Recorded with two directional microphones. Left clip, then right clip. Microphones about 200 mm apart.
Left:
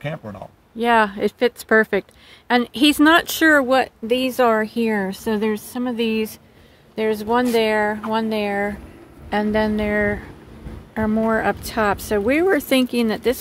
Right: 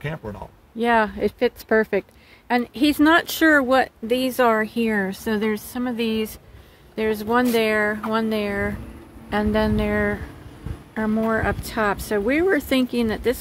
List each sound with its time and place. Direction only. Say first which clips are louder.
0.7 s speech: left 3 dB; 5° left (ahead or behind)